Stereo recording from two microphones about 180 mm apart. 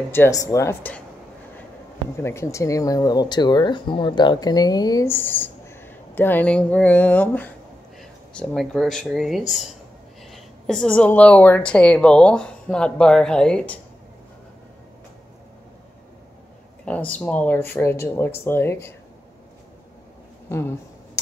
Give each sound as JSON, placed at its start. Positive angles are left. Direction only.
{"t": 0.1, "sound": "speech", "side_deg": 15}
{"t": 2.1, "sound": "a woman's voice", "side_deg": 15}
{"t": 16.8, "sound": "speech", "side_deg": 5}
{"t": 20.4, "sound": "speech", "side_deg": 15}